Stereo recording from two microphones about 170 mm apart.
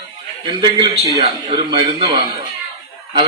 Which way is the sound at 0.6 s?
30° right (ahead or behind).